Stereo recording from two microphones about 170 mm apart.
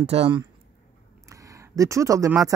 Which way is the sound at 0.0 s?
35° right (ahead or behind).